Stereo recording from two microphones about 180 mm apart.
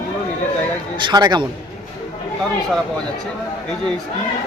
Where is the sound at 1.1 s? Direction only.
25° right (ahead or behind).